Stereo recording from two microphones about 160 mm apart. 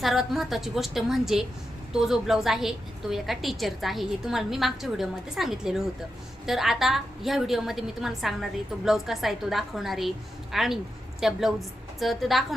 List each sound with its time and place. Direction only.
0.0 s a woman's voice: centre (ahead or behind)